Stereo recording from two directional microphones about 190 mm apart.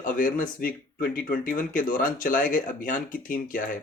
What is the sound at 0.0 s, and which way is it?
Speech, 45° left (ahead or behind).